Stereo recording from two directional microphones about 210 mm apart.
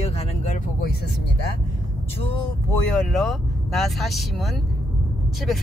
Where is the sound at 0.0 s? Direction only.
30° left (ahead or behind).